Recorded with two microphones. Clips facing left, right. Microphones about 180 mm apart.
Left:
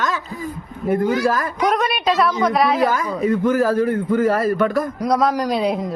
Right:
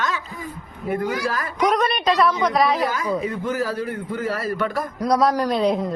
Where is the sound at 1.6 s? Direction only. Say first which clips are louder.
Even; 5° left (ahead or behind).